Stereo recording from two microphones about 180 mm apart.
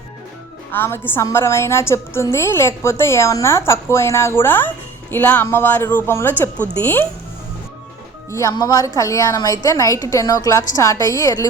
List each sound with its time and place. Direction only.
0.7 s a woman's voice: 10° left (ahead or behind)
8.3 s a woman's voice: 15° left (ahead or behind)